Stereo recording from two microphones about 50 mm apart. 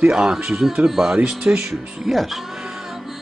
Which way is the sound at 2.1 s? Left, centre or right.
Centre.